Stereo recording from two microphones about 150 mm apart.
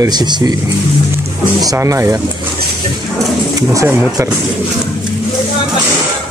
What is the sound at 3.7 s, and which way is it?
Speech, 20° right (ahead or behind).